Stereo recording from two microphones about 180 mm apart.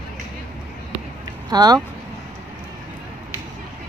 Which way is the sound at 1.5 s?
20° right (ahead or behind).